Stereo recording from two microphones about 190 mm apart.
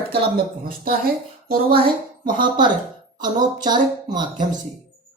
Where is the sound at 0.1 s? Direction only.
50° right (ahead or behind).